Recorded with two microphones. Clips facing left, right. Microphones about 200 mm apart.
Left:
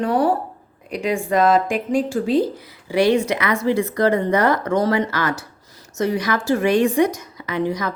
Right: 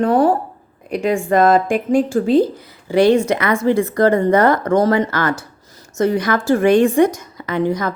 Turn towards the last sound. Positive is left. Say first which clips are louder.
# right 4 dB
turn(degrees=-50)  # may be behind; listen again after turning